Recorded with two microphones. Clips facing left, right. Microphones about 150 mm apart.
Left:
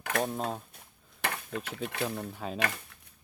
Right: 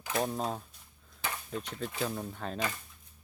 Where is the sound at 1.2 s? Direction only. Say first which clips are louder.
Left 3 dB; 70° left (ahead or behind).